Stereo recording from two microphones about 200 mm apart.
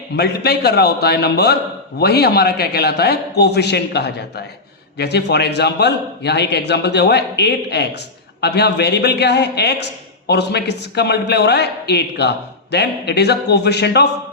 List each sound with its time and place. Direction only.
0.2 s a man's voice: 55° left (ahead or behind)